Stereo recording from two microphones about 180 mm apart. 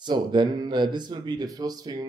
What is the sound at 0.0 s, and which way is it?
Speech, 25° right (ahead or behind).